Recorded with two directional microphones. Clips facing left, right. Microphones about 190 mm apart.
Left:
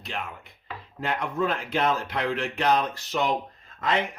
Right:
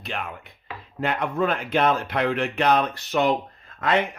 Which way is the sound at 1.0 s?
60° right (ahead or behind).